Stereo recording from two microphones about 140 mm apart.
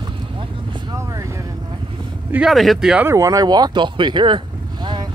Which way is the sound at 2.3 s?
5° right (ahead or behind).